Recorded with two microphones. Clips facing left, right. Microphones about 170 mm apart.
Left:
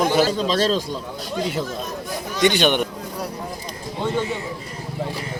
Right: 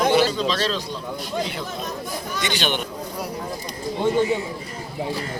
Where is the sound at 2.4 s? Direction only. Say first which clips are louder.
Left 9 dB; 55° left (ahead or behind).